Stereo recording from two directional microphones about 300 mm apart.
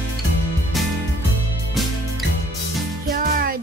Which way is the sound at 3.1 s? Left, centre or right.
Right.